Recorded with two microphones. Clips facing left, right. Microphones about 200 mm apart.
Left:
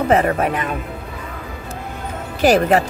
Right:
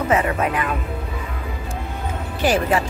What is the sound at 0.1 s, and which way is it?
Speech, 40° left (ahead or behind).